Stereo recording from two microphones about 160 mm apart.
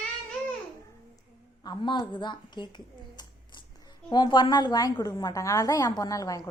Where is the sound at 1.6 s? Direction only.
30° left (ahead or behind).